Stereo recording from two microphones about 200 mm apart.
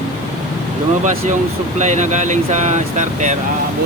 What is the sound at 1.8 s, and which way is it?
Speech, 35° right (ahead or behind).